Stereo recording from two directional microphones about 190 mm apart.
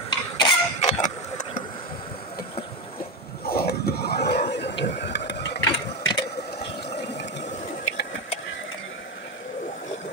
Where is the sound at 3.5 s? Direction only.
55° left (ahead or behind).